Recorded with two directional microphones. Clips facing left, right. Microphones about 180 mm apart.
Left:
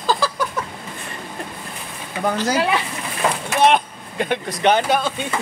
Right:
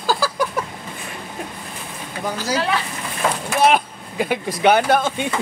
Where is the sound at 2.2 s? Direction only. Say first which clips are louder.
Left 5 dB; 60° left (ahead or behind).